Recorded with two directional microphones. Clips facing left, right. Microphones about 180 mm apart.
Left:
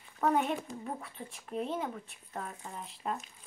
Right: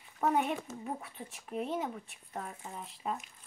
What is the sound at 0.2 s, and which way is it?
Speech, 15° right (ahead or behind).